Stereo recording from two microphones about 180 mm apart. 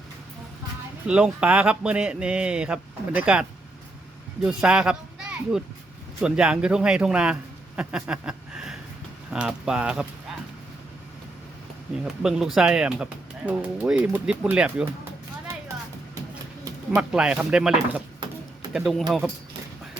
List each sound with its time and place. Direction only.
1.0 s speech: 5° right (ahead or behind)
4.4 s speech: 5° right (ahead or behind)
7.8 s a sound: 5° right (ahead or behind)
9.3 s speech: 5° right (ahead or behind)
12.0 s speech: centre (ahead or behind)
16.9 s speech: 5° right (ahead or behind)